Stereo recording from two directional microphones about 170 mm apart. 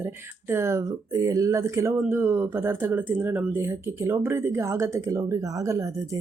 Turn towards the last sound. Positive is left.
turn(degrees=-20)  # may be behind; listen again after turning